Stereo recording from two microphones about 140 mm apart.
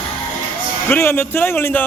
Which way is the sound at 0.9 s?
15° left (ahead or behind).